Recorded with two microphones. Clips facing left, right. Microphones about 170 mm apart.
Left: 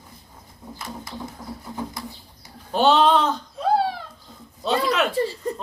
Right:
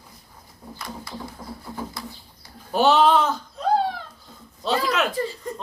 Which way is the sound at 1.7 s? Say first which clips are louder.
Left 2 dB; 20° left (ahead or behind).